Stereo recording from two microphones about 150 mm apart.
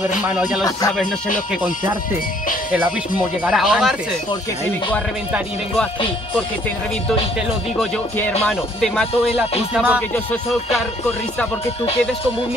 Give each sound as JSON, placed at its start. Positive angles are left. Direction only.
{"t": 0.7, "sound": "speech", "side_deg": 25}
{"t": 1.5, "sound": "speech", "side_deg": -10}
{"t": 3.4, "sound": "speech", "side_deg": 0}
{"t": 7.8, "sound": "speech", "side_deg": 5}